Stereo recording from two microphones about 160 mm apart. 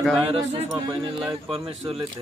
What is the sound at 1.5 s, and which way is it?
Speech, 35° right (ahead or behind).